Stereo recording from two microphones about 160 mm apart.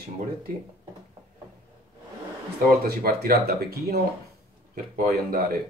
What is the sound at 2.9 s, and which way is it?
Speech, 75° right (ahead or behind).